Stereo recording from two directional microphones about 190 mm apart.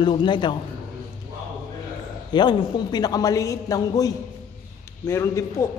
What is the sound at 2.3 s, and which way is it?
A man's voice, 20° left (ahead or behind).